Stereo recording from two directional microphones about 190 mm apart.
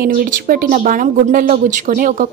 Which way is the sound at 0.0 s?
50° right (ahead or behind).